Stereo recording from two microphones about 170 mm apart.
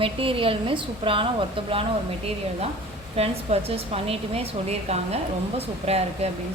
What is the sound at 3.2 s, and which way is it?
A woman's voice, 35° right (ahead or behind).